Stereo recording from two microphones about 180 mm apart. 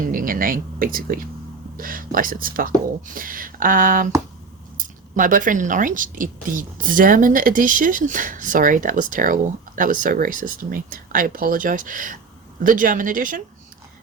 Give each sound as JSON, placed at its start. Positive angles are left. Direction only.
{"t": 0.0, "sound": "speech", "side_deg": -50}